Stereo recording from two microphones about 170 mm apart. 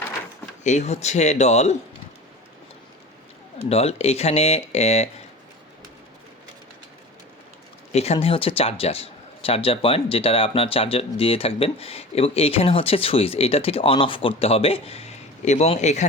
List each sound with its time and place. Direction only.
0.6 s speech: 45° left (ahead or behind)
3.7 s speech: 35° left (ahead or behind)
7.9 s speech: 40° left (ahead or behind)